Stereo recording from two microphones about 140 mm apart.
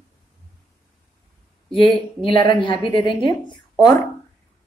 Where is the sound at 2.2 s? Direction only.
35° left (ahead or behind).